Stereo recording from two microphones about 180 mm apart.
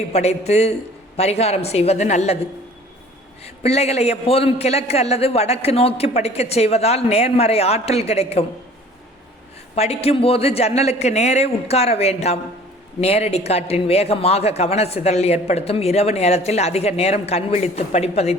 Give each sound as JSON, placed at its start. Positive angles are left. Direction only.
{"t": 0.1, "sound": "speech", "side_deg": 35}
{"t": 3.6, "sound": "speech", "side_deg": 35}
{"t": 9.7, "sound": "speech", "side_deg": 35}